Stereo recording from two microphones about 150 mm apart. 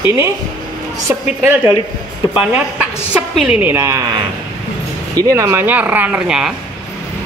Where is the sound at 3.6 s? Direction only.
15° right (ahead or behind).